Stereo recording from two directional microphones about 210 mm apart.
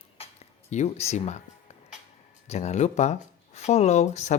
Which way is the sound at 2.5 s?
35° left (ahead or behind).